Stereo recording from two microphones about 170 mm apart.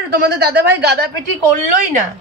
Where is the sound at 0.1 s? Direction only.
70° right (ahead or behind).